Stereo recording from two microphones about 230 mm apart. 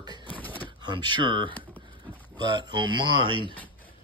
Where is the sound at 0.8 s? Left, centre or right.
Centre.